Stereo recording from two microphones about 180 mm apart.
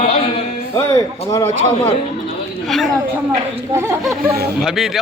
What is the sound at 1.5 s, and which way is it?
Speech, 40° right (ahead or behind).